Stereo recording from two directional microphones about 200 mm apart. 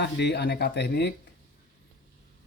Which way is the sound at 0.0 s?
60° left (ahead or behind).